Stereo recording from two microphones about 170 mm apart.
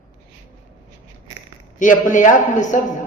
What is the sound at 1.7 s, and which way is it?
A man's voice, 50° left (ahead or behind).